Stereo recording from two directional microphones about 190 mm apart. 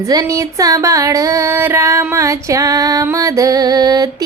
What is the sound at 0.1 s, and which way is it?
Female singing, 15° right (ahead or behind).